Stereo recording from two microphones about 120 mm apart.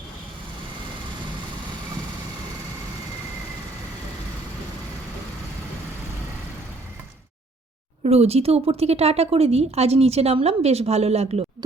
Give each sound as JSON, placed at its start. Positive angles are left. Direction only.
{"t": 8.0, "sound": "a woman's voice", "side_deg": -60}